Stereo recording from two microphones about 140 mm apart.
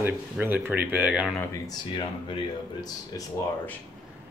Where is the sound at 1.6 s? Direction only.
35° left (ahead or behind).